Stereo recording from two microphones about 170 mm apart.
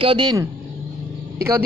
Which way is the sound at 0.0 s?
30° right (ahead or behind).